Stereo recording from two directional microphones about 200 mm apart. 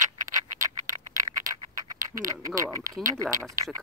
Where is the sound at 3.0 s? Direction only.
15° right (ahead or behind).